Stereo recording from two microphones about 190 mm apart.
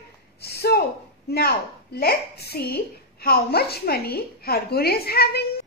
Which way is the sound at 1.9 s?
55° left (ahead or behind).